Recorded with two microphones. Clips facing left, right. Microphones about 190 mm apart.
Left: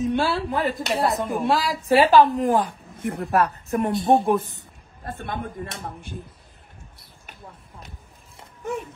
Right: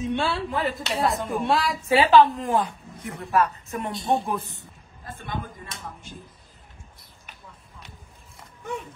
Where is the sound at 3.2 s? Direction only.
60° left (ahead or behind).